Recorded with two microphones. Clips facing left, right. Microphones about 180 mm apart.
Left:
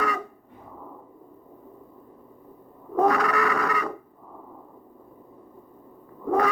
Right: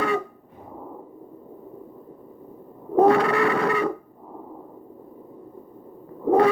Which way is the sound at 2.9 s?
30° right (ahead or behind).